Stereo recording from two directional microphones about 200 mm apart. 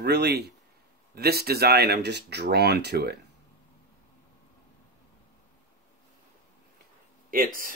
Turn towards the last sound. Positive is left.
turn(degrees=-45)  # may be behind; listen again after turning